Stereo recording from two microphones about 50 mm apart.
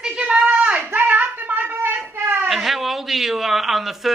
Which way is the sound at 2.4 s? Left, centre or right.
Centre.